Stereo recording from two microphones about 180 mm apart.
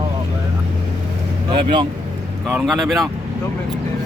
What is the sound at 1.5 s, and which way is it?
Speech, 25° right (ahead or behind).